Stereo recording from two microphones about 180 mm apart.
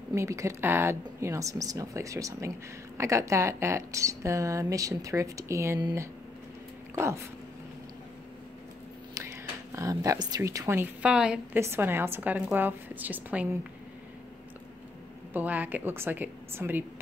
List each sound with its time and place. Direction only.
0.1 s speech: 15° right (ahead or behind)
9.1 s speech: 15° right (ahead or behind)
15.3 s speech: 10° right (ahead or behind)